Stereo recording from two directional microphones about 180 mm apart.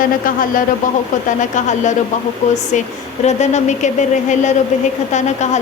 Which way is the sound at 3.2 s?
40° left (ahead or behind).